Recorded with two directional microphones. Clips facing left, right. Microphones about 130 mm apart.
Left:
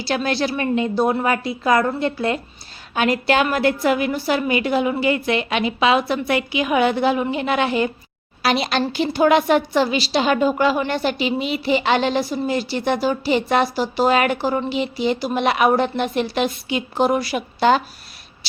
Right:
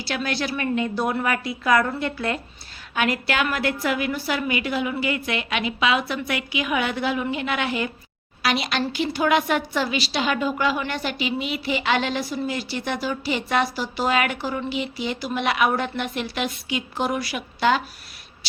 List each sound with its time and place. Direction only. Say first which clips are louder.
0.0 s a woman's voice: left 5 dB; 30° left (ahead or behind)